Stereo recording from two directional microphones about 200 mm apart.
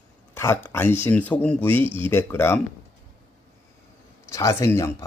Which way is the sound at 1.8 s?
25° right (ahead or behind).